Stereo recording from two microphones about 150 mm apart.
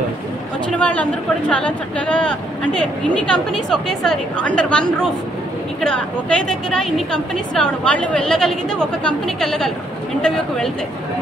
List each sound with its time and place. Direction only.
0.7 s a woman's voice: 10° left (ahead or behind)